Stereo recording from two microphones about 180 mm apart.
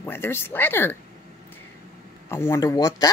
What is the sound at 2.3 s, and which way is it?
Speech, 15° left (ahead or behind).